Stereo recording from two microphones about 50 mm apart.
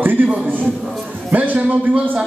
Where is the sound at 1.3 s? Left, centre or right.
Right.